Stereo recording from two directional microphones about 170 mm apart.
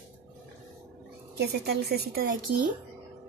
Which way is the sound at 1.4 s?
70° right (ahead or behind).